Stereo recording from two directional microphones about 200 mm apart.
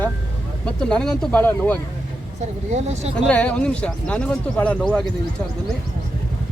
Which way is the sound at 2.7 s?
35° right (ahead or behind).